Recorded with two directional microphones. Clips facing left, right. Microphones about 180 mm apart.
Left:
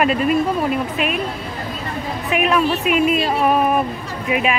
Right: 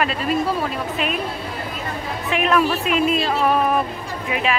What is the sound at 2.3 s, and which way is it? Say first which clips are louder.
Speech: left 1 dB; 10° left (ahead or behind).